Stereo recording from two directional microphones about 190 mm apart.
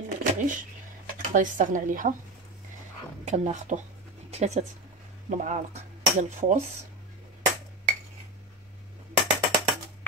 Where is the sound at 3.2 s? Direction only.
40° right (ahead or behind).